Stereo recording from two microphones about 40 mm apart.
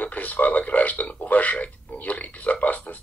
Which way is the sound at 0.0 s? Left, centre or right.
Left.